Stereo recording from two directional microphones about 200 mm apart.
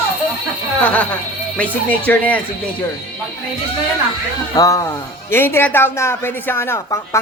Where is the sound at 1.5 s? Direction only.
10° left (ahead or behind).